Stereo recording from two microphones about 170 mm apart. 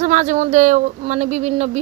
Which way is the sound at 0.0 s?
45° right (ahead or behind).